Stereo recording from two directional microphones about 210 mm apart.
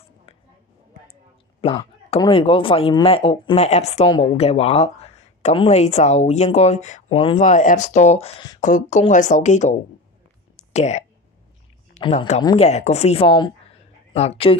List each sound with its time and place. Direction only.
1.6 s speech: 30° left (ahead or behind)
10.5 s whispering: 30° left (ahead or behind)
11.9 s speech: 25° left (ahead or behind)